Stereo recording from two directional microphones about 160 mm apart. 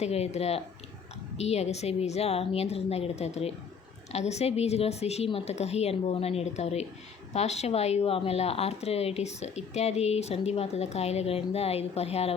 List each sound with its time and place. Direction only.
0.0 s speech: 40° left (ahead or behind)